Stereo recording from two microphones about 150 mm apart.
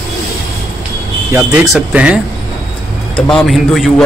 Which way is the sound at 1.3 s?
10° right (ahead or behind).